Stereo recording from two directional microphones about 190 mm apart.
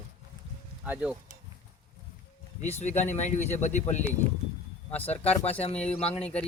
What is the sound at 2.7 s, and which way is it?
Speech, 35° left (ahead or behind).